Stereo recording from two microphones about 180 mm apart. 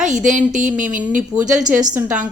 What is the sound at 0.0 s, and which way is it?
A woman's voice, 45° right (ahead or behind).